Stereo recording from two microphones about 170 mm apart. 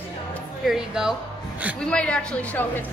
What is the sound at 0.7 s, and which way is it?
A woman's voice, 5° right (ahead or behind).